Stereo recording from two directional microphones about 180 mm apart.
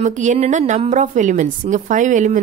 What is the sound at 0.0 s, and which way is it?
A woman's voice, 45° right (ahead or behind).